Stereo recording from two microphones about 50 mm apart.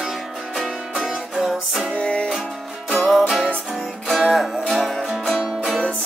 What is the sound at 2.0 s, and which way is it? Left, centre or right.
Music, left.